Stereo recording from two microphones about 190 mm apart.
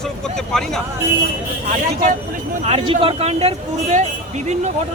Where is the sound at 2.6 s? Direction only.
30° right (ahead or behind).